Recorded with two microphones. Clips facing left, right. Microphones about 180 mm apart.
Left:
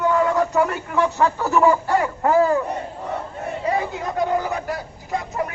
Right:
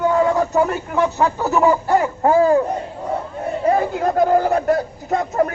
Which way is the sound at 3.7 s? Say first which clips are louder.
Right 7 dB; 55° right (ahead or behind).